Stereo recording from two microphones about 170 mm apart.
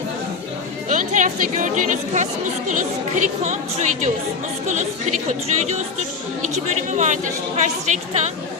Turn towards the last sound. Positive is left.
turn(degrees=-45)  # may be behind; listen again after turning